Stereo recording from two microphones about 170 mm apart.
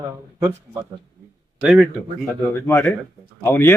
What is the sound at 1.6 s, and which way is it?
Speech, centre (ahead or behind).